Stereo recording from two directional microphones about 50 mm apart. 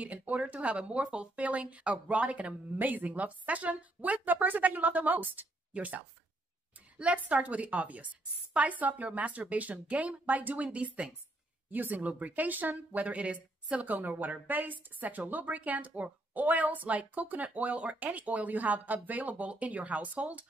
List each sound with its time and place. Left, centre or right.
0.0 s speech: right
11.7 s speech: right